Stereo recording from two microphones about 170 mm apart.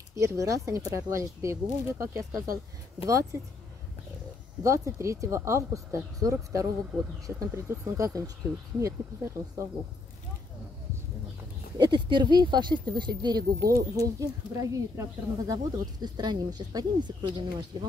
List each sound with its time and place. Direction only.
0.1 s speech: 20° right (ahead or behind)
4.6 s speech: 20° right (ahead or behind)
11.8 s speech: 25° right (ahead or behind)